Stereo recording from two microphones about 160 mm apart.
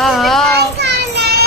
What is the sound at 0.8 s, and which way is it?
Child singing, 90° right.